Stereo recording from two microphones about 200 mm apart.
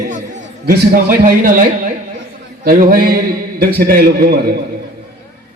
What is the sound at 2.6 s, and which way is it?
A man's voice, 45° right (ahead or behind).